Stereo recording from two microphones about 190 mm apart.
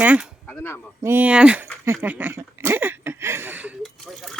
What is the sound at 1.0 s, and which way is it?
Speech, 10° right (ahead or behind).